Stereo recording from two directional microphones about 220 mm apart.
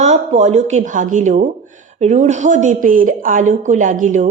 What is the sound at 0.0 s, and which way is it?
A woman's voice, 30° right (ahead or behind).